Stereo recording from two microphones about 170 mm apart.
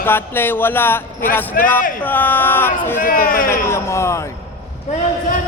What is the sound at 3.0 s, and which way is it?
Speech, 55° left (ahead or behind).